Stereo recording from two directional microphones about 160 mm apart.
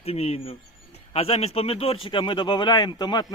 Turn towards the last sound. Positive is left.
turn(degrees=25)  # may be behind; listen again after turning